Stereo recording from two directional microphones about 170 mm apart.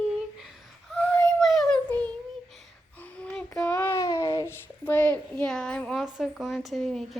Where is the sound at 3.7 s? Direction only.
15° left (ahead or behind).